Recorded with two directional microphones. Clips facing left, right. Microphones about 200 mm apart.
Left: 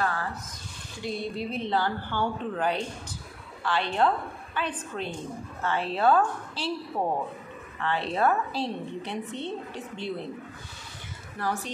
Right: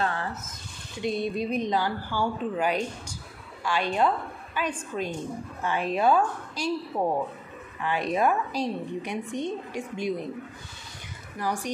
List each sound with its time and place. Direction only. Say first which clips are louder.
0.0 s a sound: right 1 dB; 25° right (ahead or behind)
1.0 s a woman's voice: right 4 dB; 20° right (ahead or behind)
7.8 s a woman's voice: right 1 dB; 15° right (ahead or behind)
11.3 s a woman's voice: right 1 dB; 15° right (ahead or behind)